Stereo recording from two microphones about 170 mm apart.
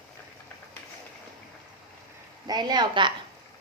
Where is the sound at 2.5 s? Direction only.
25° right (ahead or behind).